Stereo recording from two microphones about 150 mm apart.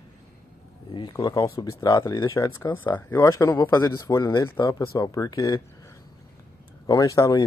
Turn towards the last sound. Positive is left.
turn(degrees=25)  # may be behind; listen again after turning